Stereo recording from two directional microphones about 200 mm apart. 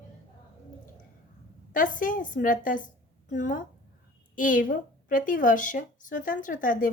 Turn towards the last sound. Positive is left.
turn(degrees=40)  # may be behind; listen again after turning